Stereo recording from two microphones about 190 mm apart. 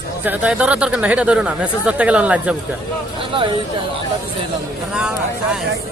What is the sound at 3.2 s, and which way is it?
Speech, 30° right (ahead or behind).